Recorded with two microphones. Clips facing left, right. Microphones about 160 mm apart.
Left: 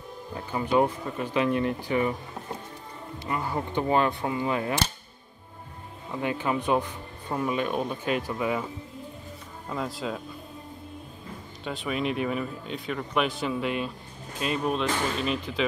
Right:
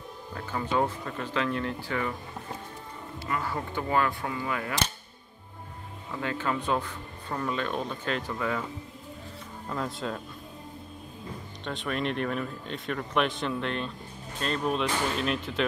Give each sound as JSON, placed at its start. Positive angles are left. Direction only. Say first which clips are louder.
{"t": 0.3, "sound": "speech", "louder": "left 4 dB", "side_deg": 15}
{"t": 3.3, "sound": "speech", "louder": "left 2 dB", "side_deg": 20}
{"t": 6.1, "sound": "speech", "louder": "left 3 dB", "side_deg": 15}
{"t": 9.7, "sound": "speech", "louder": "left 1 dB", "side_deg": 0}
{"t": 11.6, "sound": "speech", "louder": "left 2 dB", "side_deg": 5}